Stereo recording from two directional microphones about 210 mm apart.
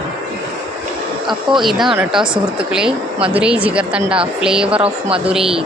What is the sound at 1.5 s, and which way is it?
Speech, centre (ahead or behind).